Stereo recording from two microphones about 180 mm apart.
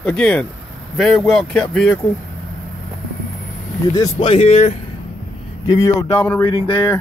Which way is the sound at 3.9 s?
25° left (ahead or behind).